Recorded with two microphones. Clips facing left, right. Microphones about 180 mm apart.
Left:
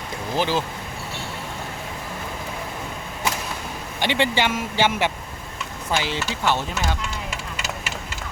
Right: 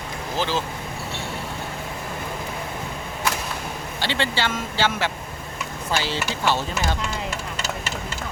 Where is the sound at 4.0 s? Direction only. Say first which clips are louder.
Left 4 dB; 15° left (ahead or behind).